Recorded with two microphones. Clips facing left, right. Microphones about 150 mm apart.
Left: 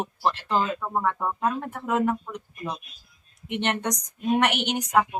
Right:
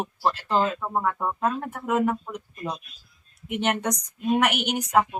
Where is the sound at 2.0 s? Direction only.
5° right (ahead or behind).